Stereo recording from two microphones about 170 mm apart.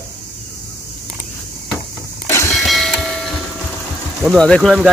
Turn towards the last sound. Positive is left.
turn(degrees=0)  # may be behind; listen again after turning